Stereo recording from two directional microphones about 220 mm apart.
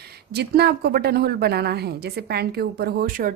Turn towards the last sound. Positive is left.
turn(degrees=-40)  # may be behind; listen again after turning